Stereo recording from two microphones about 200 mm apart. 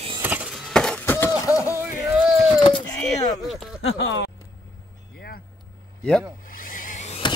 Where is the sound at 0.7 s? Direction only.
5° left (ahead or behind).